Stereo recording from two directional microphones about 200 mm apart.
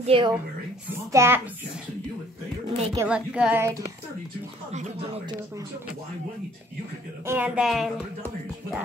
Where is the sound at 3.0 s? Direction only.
5° right (ahead or behind).